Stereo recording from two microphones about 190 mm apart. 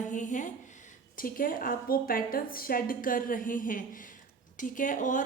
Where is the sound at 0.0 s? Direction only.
40° left (ahead or behind).